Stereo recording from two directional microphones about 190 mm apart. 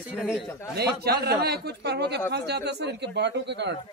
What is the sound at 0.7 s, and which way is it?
Speech, 55° right (ahead or behind).